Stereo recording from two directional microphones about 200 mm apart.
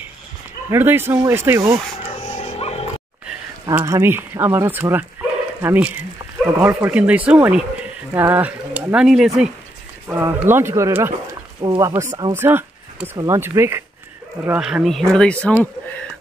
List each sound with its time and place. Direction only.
0.7 s speech: 10° right (ahead or behind)
2.2 s dog: 35° left (ahead or behind)
3.7 s speech: 15° right (ahead or behind); by 15.5 s 5° left (ahead or behind)